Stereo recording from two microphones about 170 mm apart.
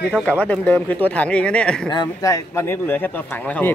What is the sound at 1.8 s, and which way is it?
Speech, 25° left (ahead or behind).